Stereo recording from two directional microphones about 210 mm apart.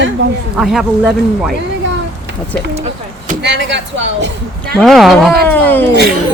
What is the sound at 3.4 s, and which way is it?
A woman's voice, 55° right (ahead or behind).